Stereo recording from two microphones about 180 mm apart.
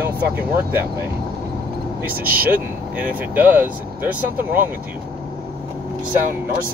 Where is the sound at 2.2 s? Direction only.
50° right (ahead or behind).